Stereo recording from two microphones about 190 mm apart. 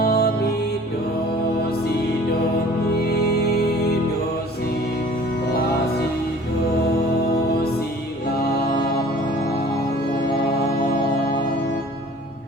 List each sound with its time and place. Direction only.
0.0 s music: 55° left (ahead or behind)